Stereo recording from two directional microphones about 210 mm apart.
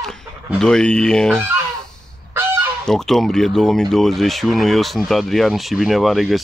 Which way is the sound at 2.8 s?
Centre (ahead or behind).